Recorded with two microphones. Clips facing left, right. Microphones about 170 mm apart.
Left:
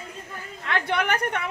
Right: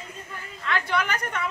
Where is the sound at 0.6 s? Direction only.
60° left (ahead or behind).